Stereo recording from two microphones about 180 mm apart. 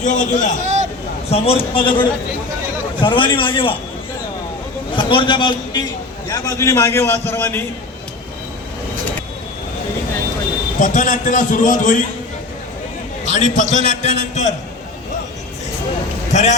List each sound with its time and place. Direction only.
0.0 s a man's voice: 45° left (ahead or behind)
0.6 s hubbub: 40° right (ahead or behind)
1.3 s a man's voice: 30° left (ahead or behind)
4.9 s a man's voice: 25° left (ahead or behind); by 7.6 s 10° left (ahead or behind)
10.8 s a man's voice: 45° left (ahead or behind)
13.2 s a man's voice: 40° left (ahead or behind)
16.3 s a man's voice: 40° left (ahead or behind)